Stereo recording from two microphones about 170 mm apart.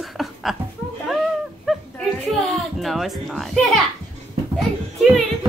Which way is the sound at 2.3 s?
Centre (ahead or behind).